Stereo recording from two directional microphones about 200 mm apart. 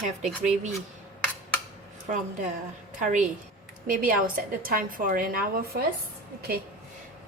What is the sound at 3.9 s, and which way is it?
A woman's voice, 45° right (ahead or behind).